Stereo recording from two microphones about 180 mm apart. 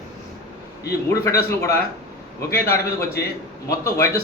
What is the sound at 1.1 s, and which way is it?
A man's voice, 15° left (ahead or behind).